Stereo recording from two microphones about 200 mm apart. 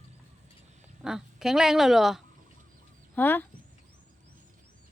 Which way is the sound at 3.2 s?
10° left (ahead or behind).